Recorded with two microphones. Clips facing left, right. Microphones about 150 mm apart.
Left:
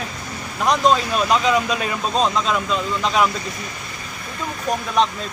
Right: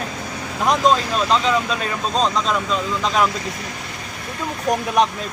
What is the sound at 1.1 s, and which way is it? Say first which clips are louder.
Speech: left 1 dB; 10° left (ahead or behind).